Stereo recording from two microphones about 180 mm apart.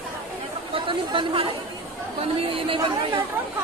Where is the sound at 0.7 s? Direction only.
30° right (ahead or behind).